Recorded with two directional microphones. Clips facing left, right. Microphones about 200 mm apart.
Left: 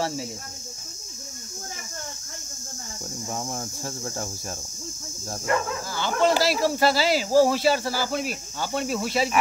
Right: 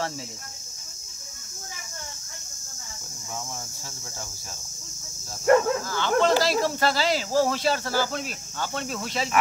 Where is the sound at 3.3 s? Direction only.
50° left (ahead or behind).